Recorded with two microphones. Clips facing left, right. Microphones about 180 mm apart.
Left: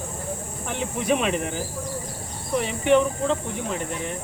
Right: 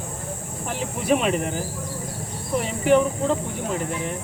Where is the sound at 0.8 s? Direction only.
Centre (ahead or behind).